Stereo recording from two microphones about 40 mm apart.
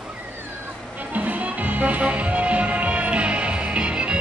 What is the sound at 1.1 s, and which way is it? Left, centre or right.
Music, right.